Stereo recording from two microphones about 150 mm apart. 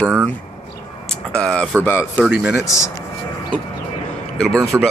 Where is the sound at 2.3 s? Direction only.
10° right (ahead or behind).